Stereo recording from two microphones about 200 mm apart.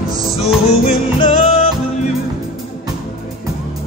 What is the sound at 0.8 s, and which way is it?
Music, 30° left (ahead or behind).